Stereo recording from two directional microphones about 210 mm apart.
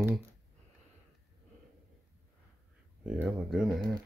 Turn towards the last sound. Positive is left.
turn(degrees=0)  # may be behind; listen again after turning